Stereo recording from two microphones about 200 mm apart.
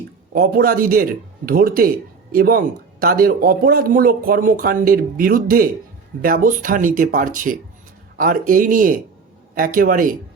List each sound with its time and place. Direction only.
0.3 s speech: 45° right (ahead or behind)